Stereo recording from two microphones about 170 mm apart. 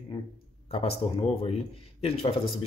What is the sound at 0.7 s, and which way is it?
Speech, 35° left (ahead or behind).